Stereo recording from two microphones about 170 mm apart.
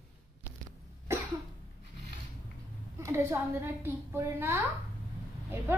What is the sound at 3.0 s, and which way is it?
A woman's voice, 15° right (ahead or behind).